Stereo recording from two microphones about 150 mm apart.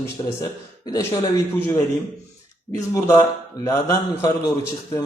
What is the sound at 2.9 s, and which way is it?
A man's voice, 20° left (ahead or behind).